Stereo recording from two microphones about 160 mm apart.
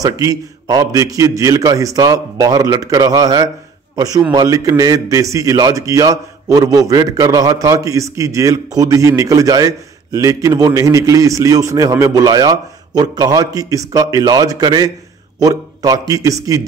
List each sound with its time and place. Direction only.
0.0 s a man's voice: 20° right (ahead or behind)